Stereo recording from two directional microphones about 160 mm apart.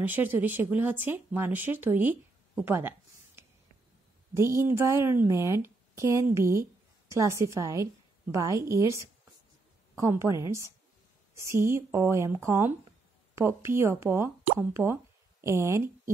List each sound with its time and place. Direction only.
0.0 s a woman's voice: 10° right (ahead or behind)
4.3 s a woman's voice: 15° right (ahead or behind)